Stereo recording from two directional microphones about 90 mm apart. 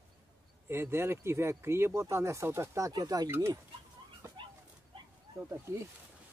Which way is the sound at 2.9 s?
45° right (ahead or behind).